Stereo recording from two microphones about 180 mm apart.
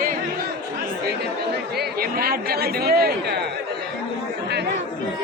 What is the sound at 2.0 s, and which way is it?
Speech, 55° right (ahead or behind).